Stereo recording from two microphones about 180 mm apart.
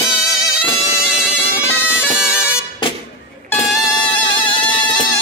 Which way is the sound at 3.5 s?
20° left (ahead or behind).